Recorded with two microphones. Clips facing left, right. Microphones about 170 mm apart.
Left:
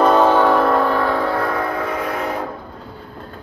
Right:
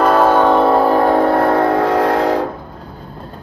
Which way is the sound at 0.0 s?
5° right (ahead or behind).